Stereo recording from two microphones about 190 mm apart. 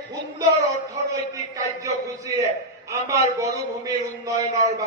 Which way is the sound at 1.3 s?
15° right (ahead or behind).